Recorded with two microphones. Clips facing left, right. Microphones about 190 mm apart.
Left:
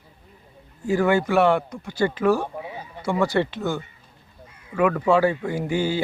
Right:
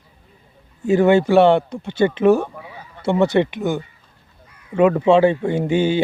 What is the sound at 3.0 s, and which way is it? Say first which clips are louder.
Speech: right 5 dB; 25° right (ahead or behind).